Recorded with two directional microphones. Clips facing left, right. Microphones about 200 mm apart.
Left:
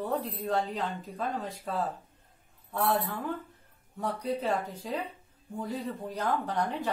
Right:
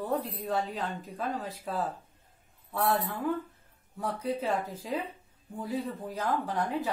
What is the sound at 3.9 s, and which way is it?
A woman's voice, centre (ahead or behind).